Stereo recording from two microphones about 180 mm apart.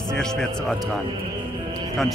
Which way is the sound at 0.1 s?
5° left (ahead or behind).